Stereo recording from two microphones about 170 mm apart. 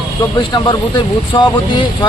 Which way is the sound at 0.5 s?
25° left (ahead or behind).